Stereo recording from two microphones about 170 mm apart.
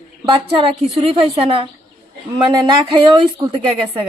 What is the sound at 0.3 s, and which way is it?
A woman's voice, 30° right (ahead or behind).